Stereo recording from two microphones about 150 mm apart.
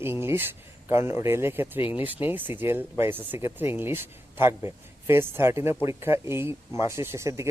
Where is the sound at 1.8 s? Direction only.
35° left (ahead or behind).